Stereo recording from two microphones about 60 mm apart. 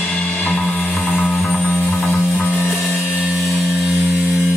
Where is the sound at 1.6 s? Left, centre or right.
Left.